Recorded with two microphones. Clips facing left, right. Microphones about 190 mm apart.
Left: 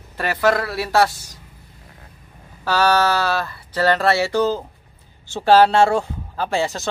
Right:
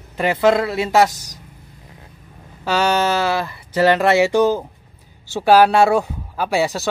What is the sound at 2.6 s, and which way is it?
Speech, 20° right (ahead or behind).